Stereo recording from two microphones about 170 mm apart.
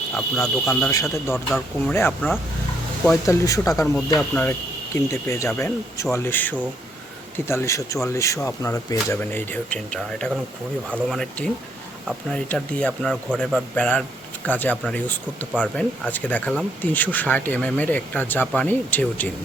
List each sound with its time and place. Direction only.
0.1 s speech: 5° left (ahead or behind)
4.2 s speech: 5° left (ahead or behind)
5.0 s speech: 15° left (ahead or behind)
10.8 s speech: 10° right (ahead or behind)
11.2 s speech: 5° left (ahead or behind)
13.7 s speech: 5° left (ahead or behind)